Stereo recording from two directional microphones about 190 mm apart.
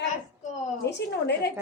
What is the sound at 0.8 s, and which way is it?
Speech, 60° left (ahead or behind).